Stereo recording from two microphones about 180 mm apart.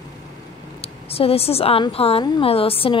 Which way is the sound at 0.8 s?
35° left (ahead or behind).